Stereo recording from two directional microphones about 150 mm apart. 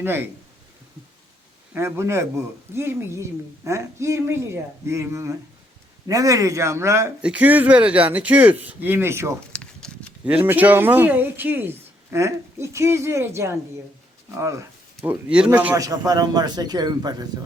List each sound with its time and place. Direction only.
0.0 s speech: 15° right (ahead or behind)
1.7 s a woman's voice: 15° right (ahead or behind)
9.5 s a sound: 5° left (ahead or behind)
10.2 s a woman's voice: 10° right (ahead or behind); by 17.2 s 25° right (ahead or behind)